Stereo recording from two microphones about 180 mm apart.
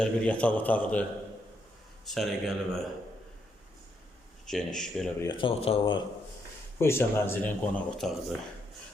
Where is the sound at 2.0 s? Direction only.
Centre (ahead or behind).